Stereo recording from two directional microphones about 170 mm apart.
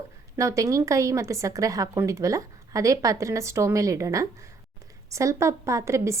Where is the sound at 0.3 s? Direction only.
20° right (ahead or behind).